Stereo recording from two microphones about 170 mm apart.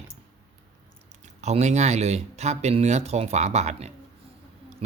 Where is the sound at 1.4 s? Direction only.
40° right (ahead or behind).